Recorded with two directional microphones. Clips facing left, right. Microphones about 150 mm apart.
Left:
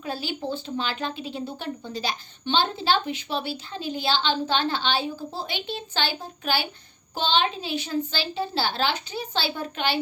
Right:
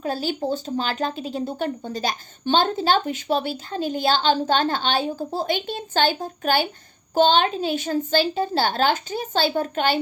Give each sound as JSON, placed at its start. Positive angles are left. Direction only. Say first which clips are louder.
{"t": 0.0, "sound": "speech", "louder": "right 5 dB", "side_deg": -45}